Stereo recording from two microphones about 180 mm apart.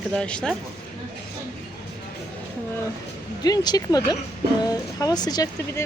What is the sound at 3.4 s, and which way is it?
Speech, 20° left (ahead or behind).